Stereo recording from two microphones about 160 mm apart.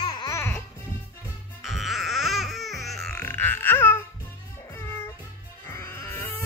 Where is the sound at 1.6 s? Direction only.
Centre (ahead or behind).